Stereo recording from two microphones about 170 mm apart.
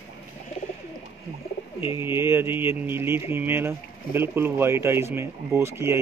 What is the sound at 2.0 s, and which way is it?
Speech, 15° right (ahead or behind).